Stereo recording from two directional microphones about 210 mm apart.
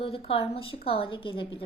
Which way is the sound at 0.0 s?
25° left (ahead or behind).